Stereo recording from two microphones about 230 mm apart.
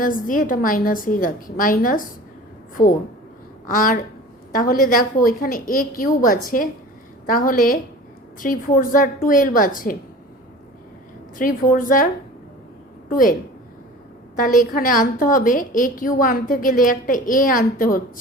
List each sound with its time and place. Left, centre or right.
0.0 s a woman's voice: left
11.3 s a woman's voice: left
13.1 s a woman's voice: left
14.3 s a woman's voice: left